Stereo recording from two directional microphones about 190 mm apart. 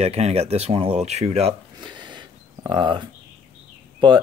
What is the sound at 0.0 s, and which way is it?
Speech, 35° right (ahead or behind).